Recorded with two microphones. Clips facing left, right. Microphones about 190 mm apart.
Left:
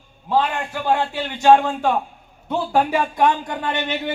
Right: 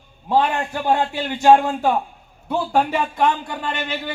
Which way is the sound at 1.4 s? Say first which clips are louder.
Even; 10° right (ahead or behind).